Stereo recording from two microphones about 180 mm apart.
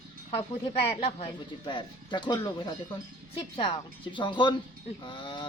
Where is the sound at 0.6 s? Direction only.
30° left (ahead or behind).